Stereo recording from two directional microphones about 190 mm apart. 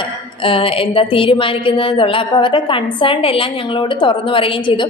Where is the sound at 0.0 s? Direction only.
25° left (ahead or behind).